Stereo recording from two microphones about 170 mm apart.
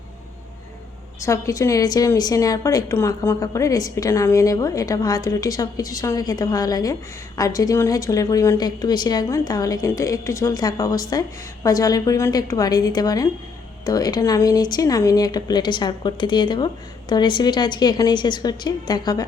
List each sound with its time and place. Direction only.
1.2 s a woman's voice: 20° left (ahead or behind)